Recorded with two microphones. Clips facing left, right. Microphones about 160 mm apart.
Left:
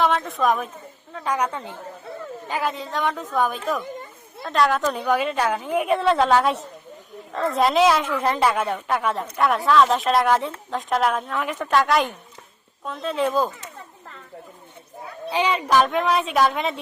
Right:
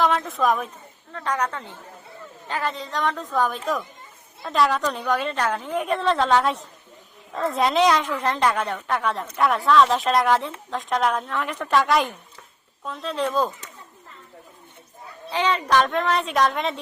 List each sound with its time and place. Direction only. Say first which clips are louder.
0.0 s a woman's voice: even; centre (ahead or behind)
15.3 s a woman's voice: left 1 dB; 10° left (ahead or behind)